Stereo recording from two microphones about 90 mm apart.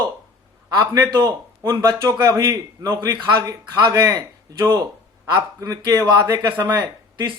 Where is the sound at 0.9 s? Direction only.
40° right (ahead or behind).